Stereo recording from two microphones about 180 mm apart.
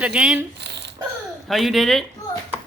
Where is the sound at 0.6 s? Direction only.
70° right (ahead or behind).